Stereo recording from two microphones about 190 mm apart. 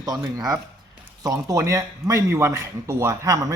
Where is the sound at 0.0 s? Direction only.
20° right (ahead or behind).